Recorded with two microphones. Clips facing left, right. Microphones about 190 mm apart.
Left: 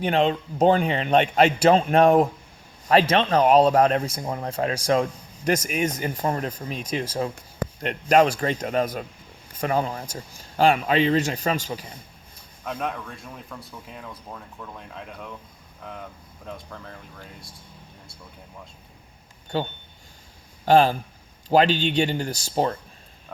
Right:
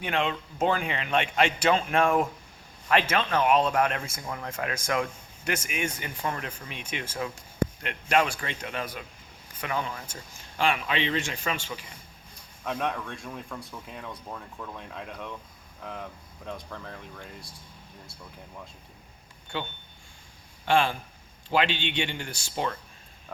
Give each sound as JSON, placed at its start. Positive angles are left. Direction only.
{"t": 0.0, "sound": "speech", "side_deg": 35}
{"t": 12.6, "sound": "speech", "side_deg": 0}
{"t": 19.5, "sound": "speech", "side_deg": 40}